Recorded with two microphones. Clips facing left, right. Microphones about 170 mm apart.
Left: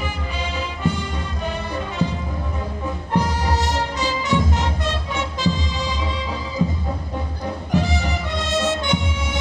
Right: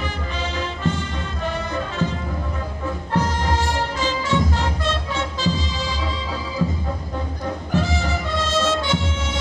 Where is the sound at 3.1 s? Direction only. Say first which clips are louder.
Left 1 dB; 15° left (ahead or behind).